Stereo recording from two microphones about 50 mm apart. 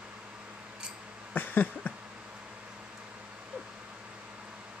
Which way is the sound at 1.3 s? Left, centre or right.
Left.